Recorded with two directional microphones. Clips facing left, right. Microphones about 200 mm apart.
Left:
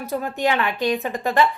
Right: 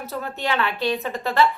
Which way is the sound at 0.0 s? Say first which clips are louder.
Left 5 dB; 15° left (ahead or behind).